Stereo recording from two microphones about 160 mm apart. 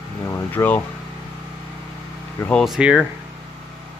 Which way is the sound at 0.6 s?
20° left (ahead or behind).